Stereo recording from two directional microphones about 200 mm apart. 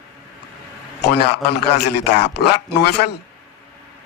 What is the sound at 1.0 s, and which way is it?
A man's voice, 55° left (ahead or behind).